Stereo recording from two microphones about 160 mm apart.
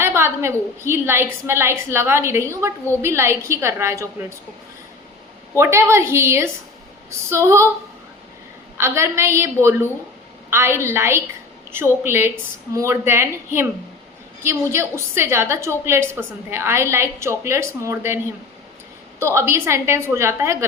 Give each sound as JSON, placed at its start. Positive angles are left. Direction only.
{"t": 0.0, "sound": "a woman's voice", "side_deg": -15}
{"t": 5.5, "sound": "a woman's voice", "side_deg": -15}
{"t": 8.8, "sound": "a woman's voice", "side_deg": -15}
{"t": 19.2, "sound": "a woman's voice", "side_deg": -15}